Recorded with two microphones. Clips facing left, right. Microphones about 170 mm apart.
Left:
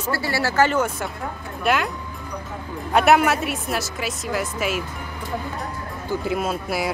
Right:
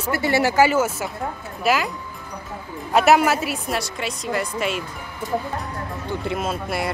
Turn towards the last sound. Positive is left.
turn(degrees=0)  # may be behind; listen again after turning